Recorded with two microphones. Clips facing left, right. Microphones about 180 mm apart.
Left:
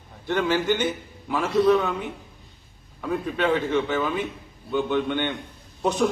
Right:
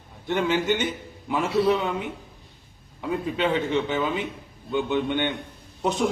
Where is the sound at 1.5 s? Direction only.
10° right (ahead or behind).